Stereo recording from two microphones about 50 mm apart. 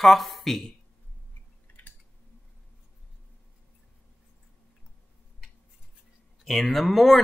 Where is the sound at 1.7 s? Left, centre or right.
Left.